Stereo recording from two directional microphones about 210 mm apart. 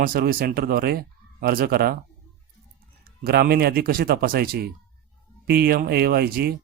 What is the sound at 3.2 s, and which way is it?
Speech, 50° right (ahead or behind).